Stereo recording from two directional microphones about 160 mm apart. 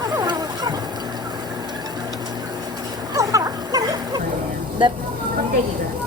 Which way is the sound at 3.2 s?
20° right (ahead or behind).